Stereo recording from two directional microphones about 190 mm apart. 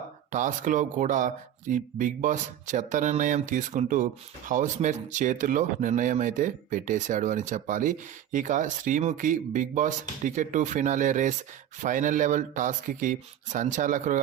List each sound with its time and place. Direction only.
0.3 s speech: 40° right (ahead or behind)